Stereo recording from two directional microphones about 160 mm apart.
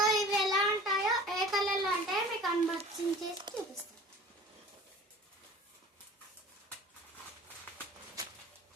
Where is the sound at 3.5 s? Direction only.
30° right (ahead or behind).